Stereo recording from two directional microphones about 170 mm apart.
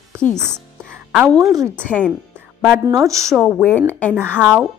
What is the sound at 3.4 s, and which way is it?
Speech, 5° left (ahead or behind).